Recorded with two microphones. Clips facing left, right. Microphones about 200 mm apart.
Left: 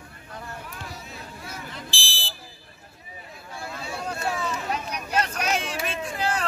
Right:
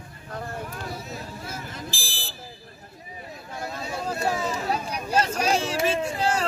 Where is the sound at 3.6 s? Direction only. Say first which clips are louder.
Right 2 dB; 40° right (ahead or behind).